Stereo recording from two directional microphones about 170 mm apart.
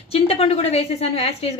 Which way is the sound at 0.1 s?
35° left (ahead or behind).